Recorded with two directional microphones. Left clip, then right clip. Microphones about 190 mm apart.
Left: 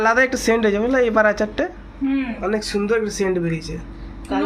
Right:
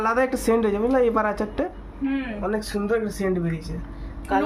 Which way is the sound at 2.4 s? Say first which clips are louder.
Left 5 dB; 15° left (ahead or behind).